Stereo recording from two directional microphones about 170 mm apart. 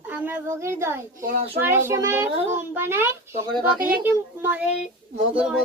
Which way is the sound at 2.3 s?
35° right (ahead or behind).